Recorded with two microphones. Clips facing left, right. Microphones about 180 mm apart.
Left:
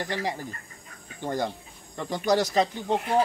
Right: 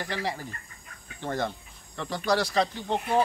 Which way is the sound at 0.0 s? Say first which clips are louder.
Left 2 dB; 20° left (ahead or behind).